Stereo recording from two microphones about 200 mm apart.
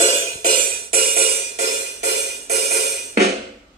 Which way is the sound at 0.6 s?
45° right (ahead or behind).